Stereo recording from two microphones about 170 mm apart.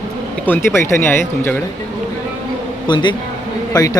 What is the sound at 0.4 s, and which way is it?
Speech, 15° left (ahead or behind).